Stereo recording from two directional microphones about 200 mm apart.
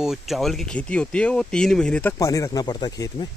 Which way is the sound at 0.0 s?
Centre (ahead or behind).